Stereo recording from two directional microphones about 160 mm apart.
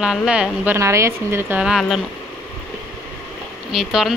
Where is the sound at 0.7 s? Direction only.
20° right (ahead or behind).